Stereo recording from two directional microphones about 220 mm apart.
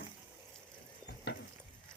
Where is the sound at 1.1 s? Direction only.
50° left (ahead or behind).